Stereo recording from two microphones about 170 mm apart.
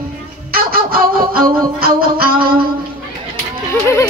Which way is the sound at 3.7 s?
15° left (ahead or behind).